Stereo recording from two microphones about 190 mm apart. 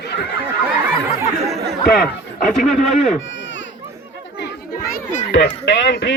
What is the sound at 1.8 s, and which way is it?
Speech, 50° left (ahead or behind).